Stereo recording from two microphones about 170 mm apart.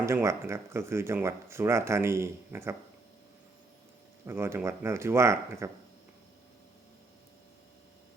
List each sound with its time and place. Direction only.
0.0 s speech: 15° right (ahead or behind)
4.3 s speech: 15° right (ahead or behind)